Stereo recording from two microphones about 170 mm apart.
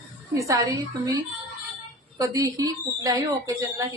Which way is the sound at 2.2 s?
20° right (ahead or behind).